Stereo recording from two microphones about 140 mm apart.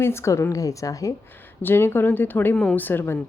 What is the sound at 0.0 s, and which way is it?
A woman's voice, 20° left (ahead or behind).